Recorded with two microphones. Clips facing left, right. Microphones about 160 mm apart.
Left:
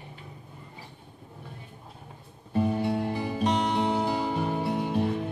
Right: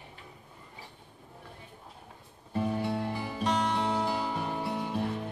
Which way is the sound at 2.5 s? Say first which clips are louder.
Left 4 dB; 20° left (ahead or behind).